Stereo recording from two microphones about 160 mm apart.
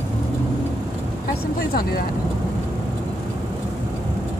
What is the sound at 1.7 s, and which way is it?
Speech, 70° left (ahead or behind).